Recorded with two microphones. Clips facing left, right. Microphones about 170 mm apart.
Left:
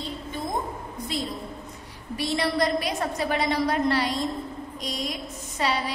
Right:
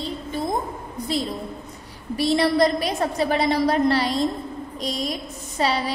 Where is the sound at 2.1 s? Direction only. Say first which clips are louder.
Right 6 dB; 35° right (ahead or behind).